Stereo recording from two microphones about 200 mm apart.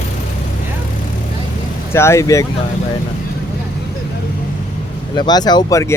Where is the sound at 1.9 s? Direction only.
15° left (ahead or behind).